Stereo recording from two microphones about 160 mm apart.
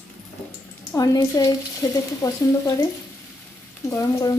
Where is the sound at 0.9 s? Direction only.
20° left (ahead or behind).